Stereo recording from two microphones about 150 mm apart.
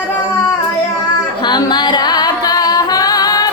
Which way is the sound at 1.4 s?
30° left (ahead or behind).